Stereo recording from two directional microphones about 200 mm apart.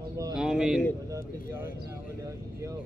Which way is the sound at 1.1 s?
15° right (ahead or behind).